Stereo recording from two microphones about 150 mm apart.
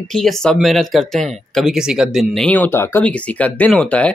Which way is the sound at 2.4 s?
10° left (ahead or behind).